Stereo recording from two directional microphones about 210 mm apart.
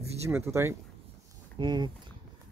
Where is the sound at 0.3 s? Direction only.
15° right (ahead or behind).